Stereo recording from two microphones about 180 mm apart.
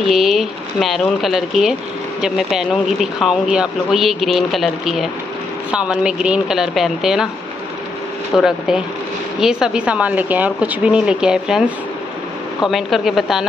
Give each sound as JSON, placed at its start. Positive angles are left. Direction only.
{"t": 0.1, "sound": "speech", "side_deg": 0}
{"t": 8.3, "sound": "speech", "side_deg": 0}